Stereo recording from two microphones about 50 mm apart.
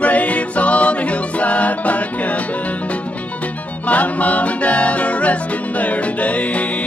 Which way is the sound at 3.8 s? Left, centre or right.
Left.